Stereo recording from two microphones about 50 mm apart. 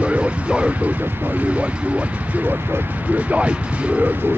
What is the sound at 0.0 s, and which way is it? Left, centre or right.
Speech, right.